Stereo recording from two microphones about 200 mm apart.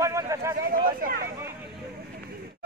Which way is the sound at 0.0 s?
15° right (ahead or behind).